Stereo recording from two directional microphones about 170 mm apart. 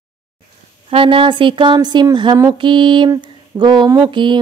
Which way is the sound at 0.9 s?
30° right (ahead or behind).